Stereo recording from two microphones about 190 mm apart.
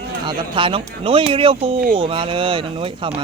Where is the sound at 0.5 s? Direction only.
25° right (ahead or behind).